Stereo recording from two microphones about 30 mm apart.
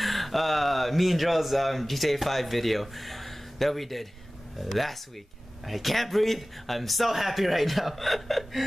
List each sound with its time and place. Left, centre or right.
0.0 s speech: centre